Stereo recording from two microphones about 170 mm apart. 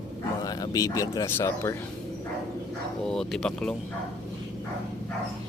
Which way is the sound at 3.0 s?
Centre (ahead or behind).